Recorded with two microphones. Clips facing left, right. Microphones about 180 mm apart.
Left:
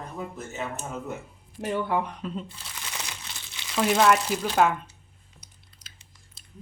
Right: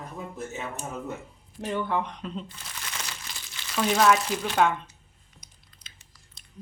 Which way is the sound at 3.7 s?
5° left (ahead or behind).